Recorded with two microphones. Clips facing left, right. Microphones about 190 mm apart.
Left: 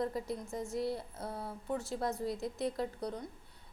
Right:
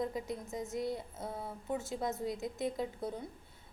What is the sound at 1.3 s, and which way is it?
A woman's voice, centre (ahead or behind).